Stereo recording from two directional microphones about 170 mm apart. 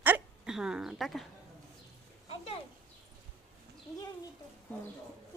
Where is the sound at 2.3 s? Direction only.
35° left (ahead or behind).